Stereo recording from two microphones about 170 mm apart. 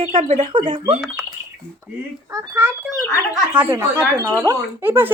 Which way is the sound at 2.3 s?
10° right (ahead or behind).